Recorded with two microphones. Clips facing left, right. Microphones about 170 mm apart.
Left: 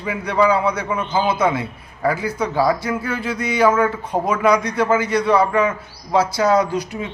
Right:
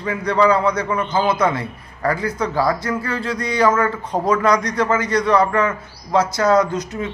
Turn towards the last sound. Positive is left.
turn(degrees=10)  # may be behind; listen again after turning